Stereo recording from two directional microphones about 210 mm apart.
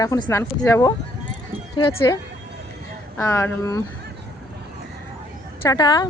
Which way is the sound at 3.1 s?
15° left (ahead or behind).